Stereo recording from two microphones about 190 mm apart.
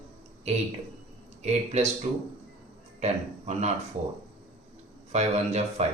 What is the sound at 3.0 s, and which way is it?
Speech, 35° right (ahead or behind).